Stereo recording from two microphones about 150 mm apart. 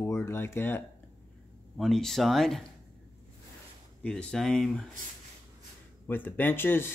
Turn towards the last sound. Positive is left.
turn(degrees=15)  # may be behind; listen again after turning